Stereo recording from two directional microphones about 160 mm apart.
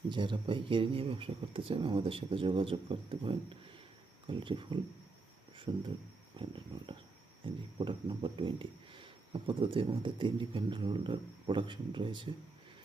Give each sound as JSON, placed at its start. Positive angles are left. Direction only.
{"t": 0.1, "sound": "speech", "side_deg": -30}
{"t": 5.7, "sound": "speech", "side_deg": -15}
{"t": 6.4, "sound": "speech", "side_deg": -30}